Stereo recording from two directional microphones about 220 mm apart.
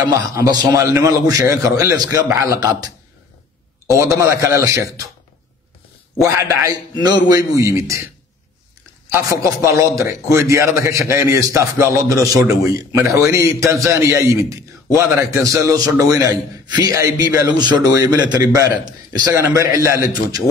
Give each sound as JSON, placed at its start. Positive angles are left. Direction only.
{"t": 0.1, "sound": "a man's voice", "side_deg": -15}
{"t": 3.9, "sound": "a man's voice", "side_deg": -15}
{"t": 6.2, "sound": "a man's voice", "side_deg": -15}
{"t": 9.1, "sound": "a man's voice", "side_deg": -15}